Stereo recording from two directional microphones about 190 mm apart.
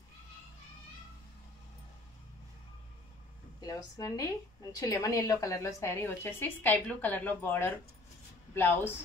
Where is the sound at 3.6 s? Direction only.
20° left (ahead or behind).